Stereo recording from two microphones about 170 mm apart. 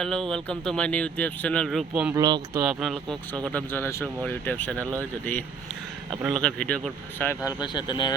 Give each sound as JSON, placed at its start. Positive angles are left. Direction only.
{"t": 0.0, "sound": "speech", "side_deg": 5}
{"t": 1.9, "sound": "speech", "side_deg": -10}
{"t": 2.1, "sound": "speech", "side_deg": -25}
{"t": 2.6, "sound": "speech", "side_deg": 0}
{"t": 3.4, "sound": "speech", "side_deg": 10}
{"t": 7.6, "sound": "speech", "side_deg": 25}